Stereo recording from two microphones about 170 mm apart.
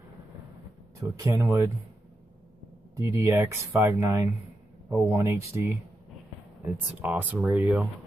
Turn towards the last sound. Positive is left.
turn(degrees=-5)  # may be behind; listen again after turning